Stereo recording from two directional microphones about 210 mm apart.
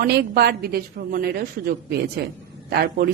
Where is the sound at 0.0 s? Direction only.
50° right (ahead or behind).